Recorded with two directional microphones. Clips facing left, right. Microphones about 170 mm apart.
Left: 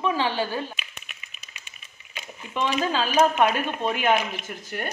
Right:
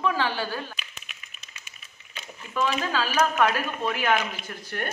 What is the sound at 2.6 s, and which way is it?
Speech, 30° left (ahead or behind).